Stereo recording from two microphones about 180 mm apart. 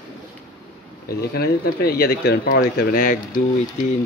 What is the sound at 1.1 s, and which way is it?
Speech, 60° left (ahead or behind).